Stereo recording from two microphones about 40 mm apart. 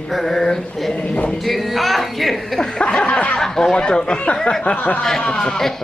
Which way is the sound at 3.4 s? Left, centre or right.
Centre.